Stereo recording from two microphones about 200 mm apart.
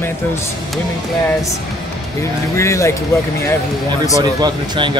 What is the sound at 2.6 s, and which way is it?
Speech, 15° left (ahead or behind).